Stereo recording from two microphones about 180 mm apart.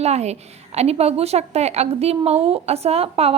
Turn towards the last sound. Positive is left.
turn(degrees=-35)  # may be behind; listen again after turning